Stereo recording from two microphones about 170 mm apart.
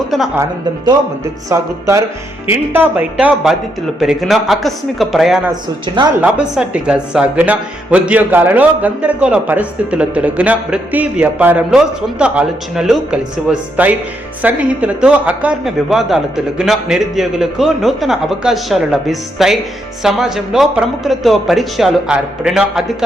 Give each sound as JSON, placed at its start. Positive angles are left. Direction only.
{"t": 1.5, "sound": "a man's voice", "side_deg": -20}
{"t": 5.5, "sound": "speech", "side_deg": -25}
{"t": 6.2, "sound": "a man's voice", "side_deg": -5}